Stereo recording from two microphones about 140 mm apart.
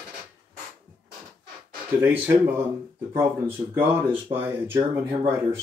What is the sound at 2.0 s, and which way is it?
Speech, 15° right (ahead or behind).